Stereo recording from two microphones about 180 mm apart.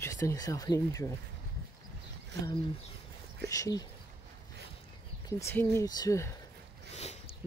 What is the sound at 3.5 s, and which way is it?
Speech, 20° left (ahead or behind).